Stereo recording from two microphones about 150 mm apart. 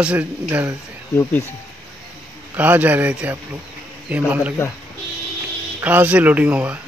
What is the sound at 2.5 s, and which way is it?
Speech, 10° right (ahead or behind).